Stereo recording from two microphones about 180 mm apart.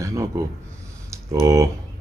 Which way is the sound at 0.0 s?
15° right (ahead or behind).